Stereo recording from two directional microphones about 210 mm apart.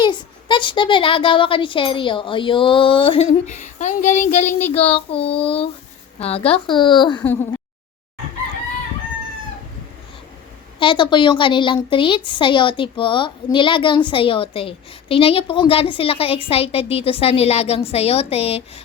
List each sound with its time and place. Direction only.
0.0 s a woman's voice: 20° left (ahead or behind)
10.8 s a woman's voice: 25° left (ahead or behind)